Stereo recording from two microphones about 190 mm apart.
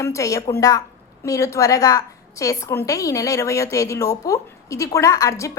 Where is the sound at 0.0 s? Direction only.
15° left (ahead or behind).